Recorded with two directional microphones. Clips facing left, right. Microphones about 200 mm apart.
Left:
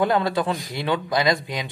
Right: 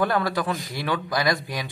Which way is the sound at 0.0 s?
20° left (ahead or behind).